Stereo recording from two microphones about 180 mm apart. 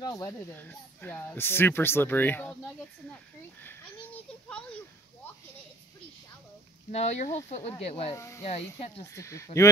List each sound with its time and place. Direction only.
0.0 s speech: 20° left (ahead or behind)
6.9 s speech: 40° left (ahead or behind)
8.2 s speech: 15° left (ahead or behind)
8.5 s speech: 35° left (ahead or behind)
9.1 s speech: 15° left (ahead or behind)